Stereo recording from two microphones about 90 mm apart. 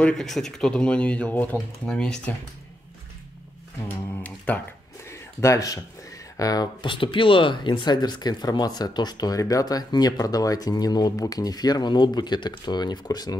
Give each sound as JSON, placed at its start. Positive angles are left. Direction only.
{"t": 0.0, "sound": "speech", "side_deg": 5}
{"t": 4.5, "sound": "speech", "side_deg": 20}
{"t": 5.0, "sound": "a sound", "side_deg": 35}
{"t": 6.8, "sound": "speech", "side_deg": 70}